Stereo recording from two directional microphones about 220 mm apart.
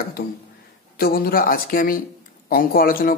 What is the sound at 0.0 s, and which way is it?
A man's voice, 45° left (ahead or behind).